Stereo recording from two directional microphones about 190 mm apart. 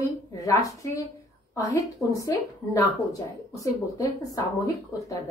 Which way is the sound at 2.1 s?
15° left (ahead or behind).